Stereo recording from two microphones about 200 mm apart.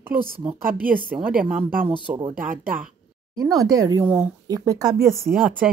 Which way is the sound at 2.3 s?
45° right (ahead or behind).